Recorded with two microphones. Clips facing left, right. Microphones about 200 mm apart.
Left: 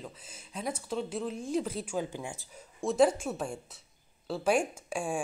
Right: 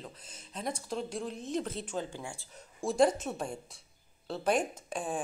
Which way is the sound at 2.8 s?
Centre (ahead or behind).